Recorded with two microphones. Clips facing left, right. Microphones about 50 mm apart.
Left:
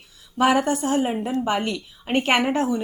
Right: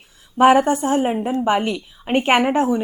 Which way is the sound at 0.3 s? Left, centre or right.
Right.